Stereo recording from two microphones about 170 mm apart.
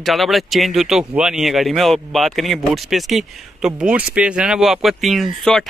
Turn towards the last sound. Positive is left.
turn(degrees=0)  # may be behind; listen again after turning